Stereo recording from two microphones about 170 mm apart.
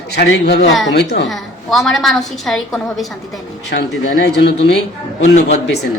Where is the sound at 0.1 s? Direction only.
75° left (ahead or behind).